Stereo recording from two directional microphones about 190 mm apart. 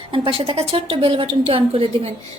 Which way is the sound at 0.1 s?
30° right (ahead or behind).